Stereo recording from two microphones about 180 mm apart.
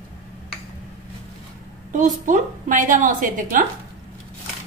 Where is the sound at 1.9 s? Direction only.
45° right (ahead or behind).